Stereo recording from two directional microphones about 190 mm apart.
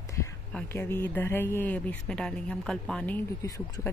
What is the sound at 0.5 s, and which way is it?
Speech, 10° left (ahead or behind).